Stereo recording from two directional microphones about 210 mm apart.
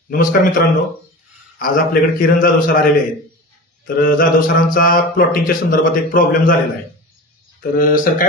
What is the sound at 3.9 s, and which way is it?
Speech, 40° left (ahead or behind).